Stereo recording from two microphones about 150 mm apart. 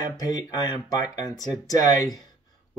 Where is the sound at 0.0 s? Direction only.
25° left (ahead or behind).